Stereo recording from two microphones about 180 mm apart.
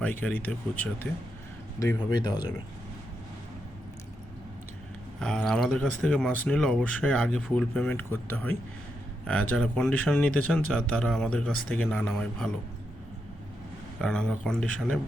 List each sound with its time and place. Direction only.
0.0 s speech: 10° left (ahead or behind)
2.0 s speech: 20° left (ahead or behind)
5.2 s speech: 5° left (ahead or behind)
14.0 s speech: 5° left (ahead or behind)